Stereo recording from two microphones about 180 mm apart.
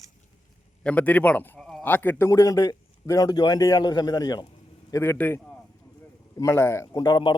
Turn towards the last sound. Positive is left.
turn(degrees=25)  # may be behind; listen again after turning